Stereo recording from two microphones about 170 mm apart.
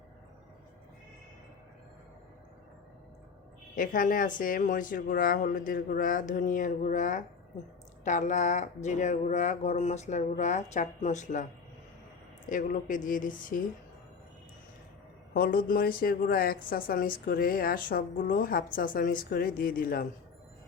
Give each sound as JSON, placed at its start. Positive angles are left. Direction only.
{"t": 3.8, "sound": "speech", "side_deg": 55}
{"t": 12.5, "sound": "speech", "side_deg": 50}
{"t": 15.3, "sound": "speech", "side_deg": 60}